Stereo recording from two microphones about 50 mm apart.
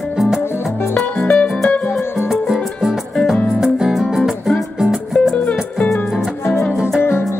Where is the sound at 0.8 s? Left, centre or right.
Left.